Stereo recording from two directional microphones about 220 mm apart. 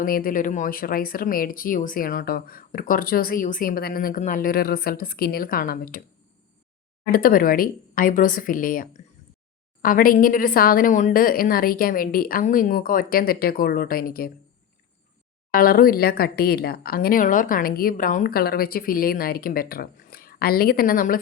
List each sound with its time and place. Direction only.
0.0 s speech: 40° left (ahead or behind)
7.1 s speech: 40° left (ahead or behind)
15.5 s speech: 40° left (ahead or behind)